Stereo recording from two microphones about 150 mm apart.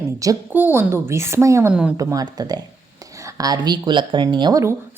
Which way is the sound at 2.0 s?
25° right (ahead or behind).